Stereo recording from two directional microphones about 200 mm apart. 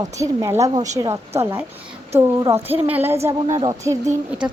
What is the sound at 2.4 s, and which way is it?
A woman's voice, 15° right (ahead or behind).